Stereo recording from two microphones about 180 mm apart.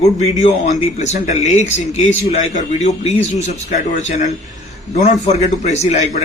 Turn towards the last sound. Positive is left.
turn(degrees=40)  # may be behind; listen again after turning